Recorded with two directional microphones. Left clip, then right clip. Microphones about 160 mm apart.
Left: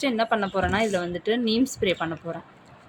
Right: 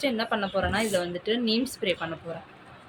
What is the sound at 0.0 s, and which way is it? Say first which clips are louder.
A woman's voice: left 3 dB; 60° left (ahead or behind).